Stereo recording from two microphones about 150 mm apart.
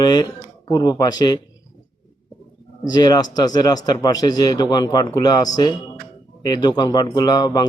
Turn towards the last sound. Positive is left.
turn(degrees=30)  # may be behind; listen again after turning